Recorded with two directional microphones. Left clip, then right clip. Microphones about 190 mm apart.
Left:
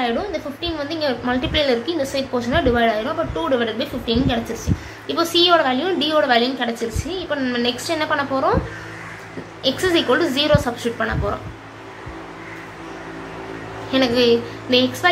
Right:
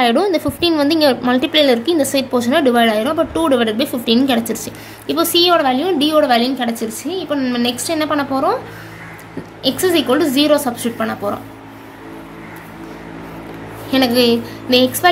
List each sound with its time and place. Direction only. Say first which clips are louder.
0.0 s a woman's voice: right 8 dB; 55° right (ahead or behind)
9.6 s a woman's voice: right 3 dB; 40° right (ahead or behind)
13.8 s a woman's voice: right 2 dB; 45° right (ahead or behind)